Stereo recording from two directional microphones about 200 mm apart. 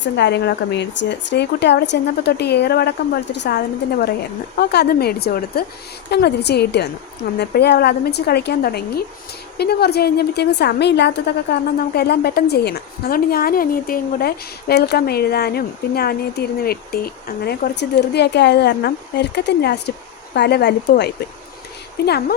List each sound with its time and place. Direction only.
0.0 s a woman's voice: 60° left (ahead or behind)